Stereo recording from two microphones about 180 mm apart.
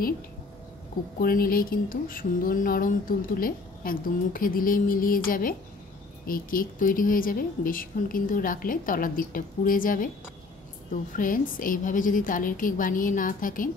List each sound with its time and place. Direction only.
1.2 s speech: 55° left (ahead or behind)